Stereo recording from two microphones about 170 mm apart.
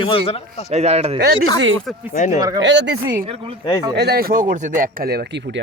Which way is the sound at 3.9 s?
75° right (ahead or behind).